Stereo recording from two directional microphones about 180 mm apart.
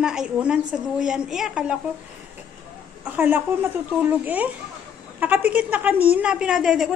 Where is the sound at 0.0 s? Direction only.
5° right (ahead or behind).